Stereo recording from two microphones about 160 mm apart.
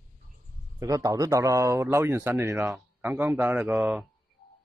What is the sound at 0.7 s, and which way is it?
A man's voice, 20° right (ahead or behind).